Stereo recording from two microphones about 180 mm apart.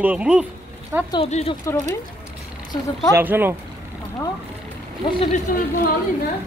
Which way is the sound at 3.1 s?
10° right (ahead or behind).